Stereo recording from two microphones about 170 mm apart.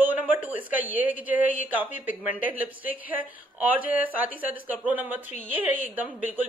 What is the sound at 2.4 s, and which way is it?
Speech, 55° left (ahead or behind).